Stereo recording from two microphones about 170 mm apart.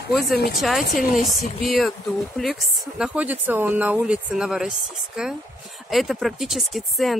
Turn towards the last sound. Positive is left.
turn(degrees=0)  # may be behind; listen again after turning